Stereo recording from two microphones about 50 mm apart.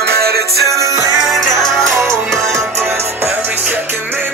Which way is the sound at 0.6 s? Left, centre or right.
Right.